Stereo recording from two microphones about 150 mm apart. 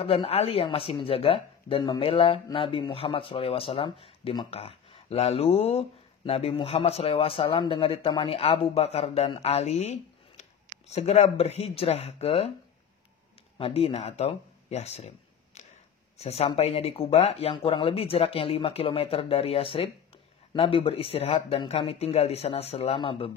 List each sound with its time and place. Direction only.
0.0 s speech: 40° left (ahead or behind)
13.6 s speech: 40° left (ahead or behind)